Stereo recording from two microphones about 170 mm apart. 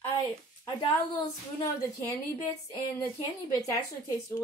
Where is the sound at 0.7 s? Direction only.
25° left (ahead or behind).